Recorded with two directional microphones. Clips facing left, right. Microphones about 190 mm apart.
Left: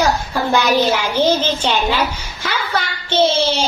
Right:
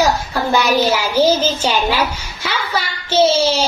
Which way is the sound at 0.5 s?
10° right (ahead or behind).